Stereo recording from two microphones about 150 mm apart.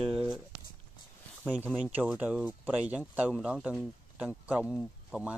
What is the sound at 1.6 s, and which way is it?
Speech, 10° right (ahead or behind).